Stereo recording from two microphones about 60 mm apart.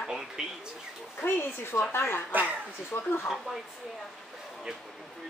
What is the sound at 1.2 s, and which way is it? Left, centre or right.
A woman's voice, left.